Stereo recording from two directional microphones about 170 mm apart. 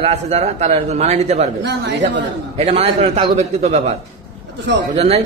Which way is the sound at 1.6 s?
90° right.